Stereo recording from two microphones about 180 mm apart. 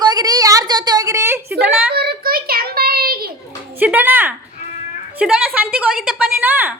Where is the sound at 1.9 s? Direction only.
60° right (ahead or behind).